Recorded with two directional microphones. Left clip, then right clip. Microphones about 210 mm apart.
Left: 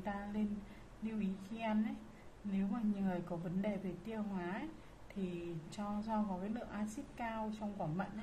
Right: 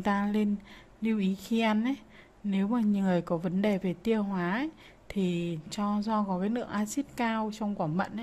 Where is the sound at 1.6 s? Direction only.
55° right (ahead or behind).